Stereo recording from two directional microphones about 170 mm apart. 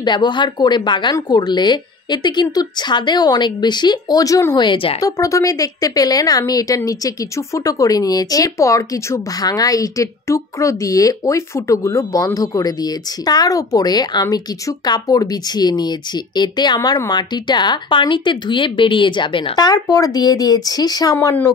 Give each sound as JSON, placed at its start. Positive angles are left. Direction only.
{"t": 0.0, "sound": "speech", "side_deg": 25}
{"t": 5.0, "sound": "speech", "side_deg": 20}